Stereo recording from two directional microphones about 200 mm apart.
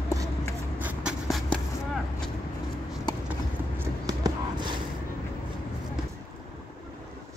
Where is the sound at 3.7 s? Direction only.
20° right (ahead or behind).